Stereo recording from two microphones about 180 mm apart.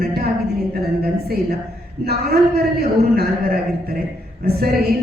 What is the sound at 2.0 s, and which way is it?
A man's voice, 60° right (ahead or behind).